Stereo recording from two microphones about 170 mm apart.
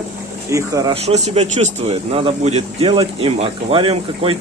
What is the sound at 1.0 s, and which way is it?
Speech, 40° right (ahead or behind).